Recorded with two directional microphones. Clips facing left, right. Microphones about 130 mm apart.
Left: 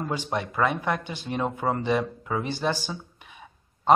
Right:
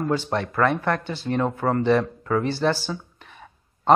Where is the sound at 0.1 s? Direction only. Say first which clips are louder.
Right 5 dB; 15° left (ahead or behind).